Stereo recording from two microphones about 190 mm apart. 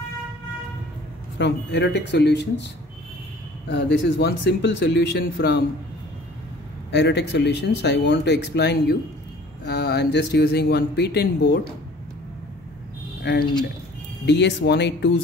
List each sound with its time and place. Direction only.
1.4 s speech: 65° left (ahead or behind)
6.9 s speech: 65° left (ahead or behind)
13.2 s speech: 60° left (ahead or behind)